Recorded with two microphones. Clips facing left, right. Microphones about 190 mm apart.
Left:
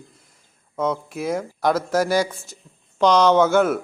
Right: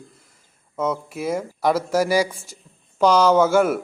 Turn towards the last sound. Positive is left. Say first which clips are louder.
# even
turn(degrees=-5)  # may be behind; listen again after turning